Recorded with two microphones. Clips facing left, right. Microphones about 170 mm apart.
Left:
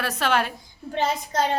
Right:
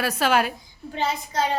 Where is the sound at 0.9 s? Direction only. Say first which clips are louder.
Left 2 dB; 50° left (ahead or behind).